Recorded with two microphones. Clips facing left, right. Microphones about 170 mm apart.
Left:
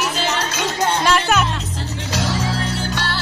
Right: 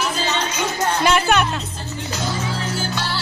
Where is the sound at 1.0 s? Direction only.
Centre (ahead or behind).